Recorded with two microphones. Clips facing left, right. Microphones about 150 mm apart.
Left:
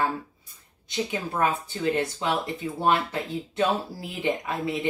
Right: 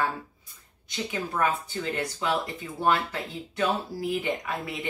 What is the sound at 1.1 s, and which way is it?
Speech, 25° left (ahead or behind).